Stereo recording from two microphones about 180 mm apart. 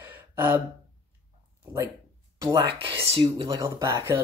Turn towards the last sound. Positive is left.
turn(degrees=-15)  # may be behind; listen again after turning